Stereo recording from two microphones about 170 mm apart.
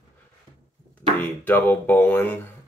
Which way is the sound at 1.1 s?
10° left (ahead or behind).